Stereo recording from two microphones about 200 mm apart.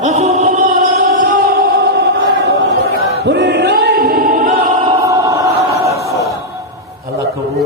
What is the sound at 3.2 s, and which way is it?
Choir, 60° right (ahead or behind).